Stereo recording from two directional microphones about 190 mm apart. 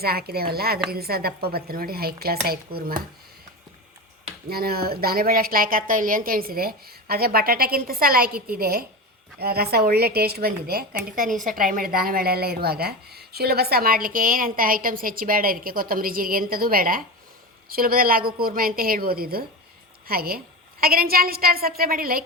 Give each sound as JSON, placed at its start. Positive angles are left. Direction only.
{"t": 0.0, "sound": "a woman's voice", "side_deg": -55}
{"t": 4.4, "sound": "a woman's voice", "side_deg": -55}